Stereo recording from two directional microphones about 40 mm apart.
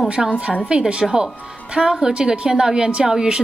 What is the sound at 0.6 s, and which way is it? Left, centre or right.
A woman's voice, right.